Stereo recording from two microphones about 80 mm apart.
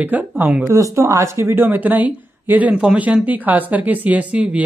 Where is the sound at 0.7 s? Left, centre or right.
Right.